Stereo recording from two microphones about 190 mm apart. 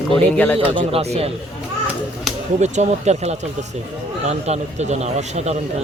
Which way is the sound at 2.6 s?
35° right (ahead or behind).